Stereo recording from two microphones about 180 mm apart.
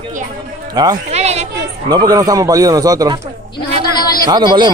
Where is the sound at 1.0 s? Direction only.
35° right (ahead or behind).